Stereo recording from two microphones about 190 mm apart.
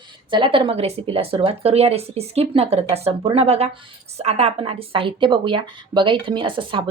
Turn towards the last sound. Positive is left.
turn(degrees=-25)  # may be behind; listen again after turning